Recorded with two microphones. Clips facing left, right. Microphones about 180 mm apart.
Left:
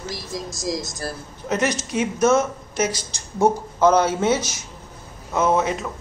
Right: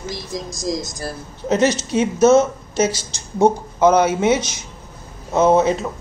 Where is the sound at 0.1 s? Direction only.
Centre (ahead or behind).